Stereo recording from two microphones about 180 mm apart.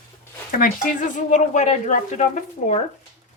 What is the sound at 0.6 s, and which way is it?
Speech, 50° left (ahead or behind).